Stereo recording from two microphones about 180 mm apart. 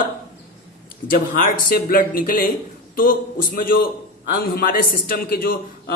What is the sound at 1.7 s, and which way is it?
Speech, 55° left (ahead or behind).